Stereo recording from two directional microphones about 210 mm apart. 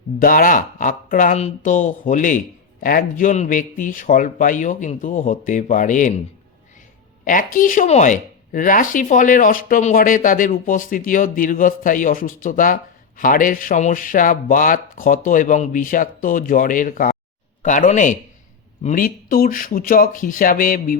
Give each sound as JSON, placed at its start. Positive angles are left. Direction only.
{"t": 0.2, "sound": "speech", "side_deg": 40}
{"t": 7.3, "sound": "speech", "side_deg": 40}